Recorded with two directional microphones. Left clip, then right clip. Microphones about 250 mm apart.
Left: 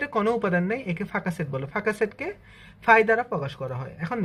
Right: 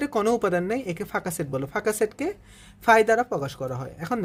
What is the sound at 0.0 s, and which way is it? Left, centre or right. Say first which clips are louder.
Speech: right 1 dB; right.